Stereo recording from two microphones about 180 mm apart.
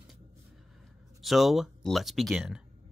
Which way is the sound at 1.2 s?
Centre (ahead or behind).